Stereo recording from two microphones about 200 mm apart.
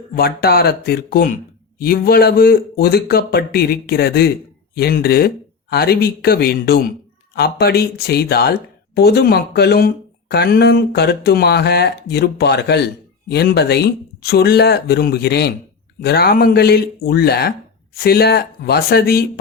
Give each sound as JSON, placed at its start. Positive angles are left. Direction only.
{"t": 0.2, "sound": "a man's voice", "side_deg": 50}